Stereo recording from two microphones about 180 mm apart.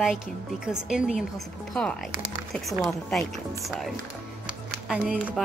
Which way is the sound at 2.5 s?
Centre (ahead or behind).